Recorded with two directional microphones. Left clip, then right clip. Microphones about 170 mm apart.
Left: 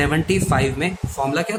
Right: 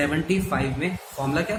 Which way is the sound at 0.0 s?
50° left (ahead or behind).